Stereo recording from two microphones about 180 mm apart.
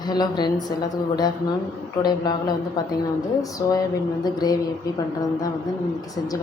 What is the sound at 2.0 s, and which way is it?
Speech, 20° left (ahead or behind).